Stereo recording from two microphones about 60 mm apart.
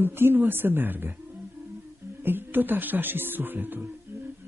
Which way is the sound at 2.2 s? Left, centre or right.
Right.